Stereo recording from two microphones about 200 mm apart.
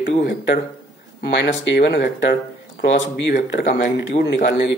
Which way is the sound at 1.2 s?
55° left (ahead or behind).